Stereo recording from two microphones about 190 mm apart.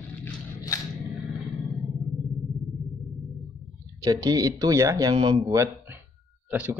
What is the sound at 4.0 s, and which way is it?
A man's voice, 20° right (ahead or behind).